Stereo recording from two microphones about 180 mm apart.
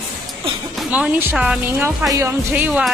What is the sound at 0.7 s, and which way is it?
A woman's voice, 5° right (ahead or behind).